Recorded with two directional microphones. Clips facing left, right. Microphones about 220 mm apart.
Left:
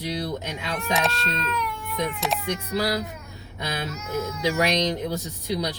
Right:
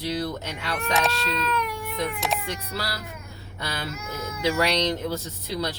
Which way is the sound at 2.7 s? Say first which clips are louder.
Left 11 dB; 20° left (ahead or behind).